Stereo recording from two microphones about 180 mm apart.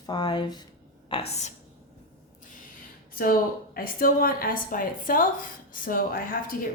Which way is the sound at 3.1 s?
55° left (ahead or behind).